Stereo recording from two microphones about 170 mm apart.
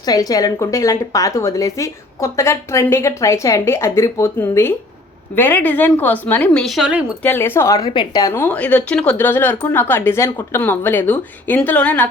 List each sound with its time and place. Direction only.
0.0 s a woman's voice: 20° left (ahead or behind); by 7.0 s 5° right (ahead or behind)
7.2 s a woman's voice: 10° left (ahead or behind)